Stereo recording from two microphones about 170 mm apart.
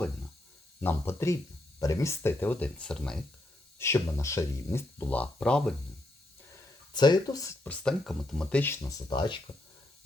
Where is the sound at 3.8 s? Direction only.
15° left (ahead or behind).